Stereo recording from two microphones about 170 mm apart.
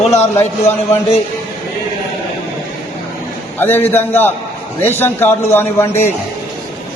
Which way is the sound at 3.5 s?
10° left (ahead or behind).